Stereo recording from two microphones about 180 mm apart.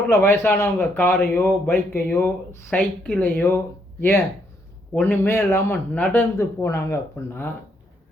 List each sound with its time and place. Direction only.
0.1 s a man's voice: 15° left (ahead or behind)
4.9 s a man's voice: 10° left (ahead or behind)